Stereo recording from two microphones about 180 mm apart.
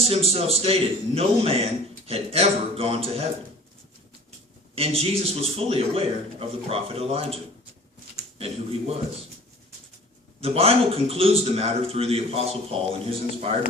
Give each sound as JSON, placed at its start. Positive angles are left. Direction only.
{"t": 0.0, "sound": "a man's voice", "side_deg": -35}
{"t": 4.7, "sound": "a man's voice", "side_deg": -30}
{"t": 8.4, "sound": "a man's voice", "side_deg": -35}
{"t": 10.4, "sound": "a man's voice", "side_deg": -35}